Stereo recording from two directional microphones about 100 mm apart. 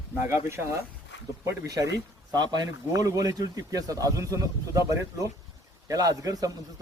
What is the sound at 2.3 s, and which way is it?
Speech, 45° right (ahead or behind).